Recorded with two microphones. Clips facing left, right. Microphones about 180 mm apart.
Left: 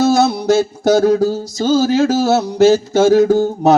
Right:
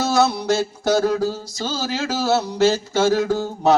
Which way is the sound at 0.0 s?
50° left (ahead or behind).